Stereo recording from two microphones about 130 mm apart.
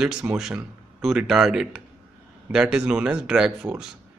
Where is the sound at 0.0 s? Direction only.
5° right (ahead or behind).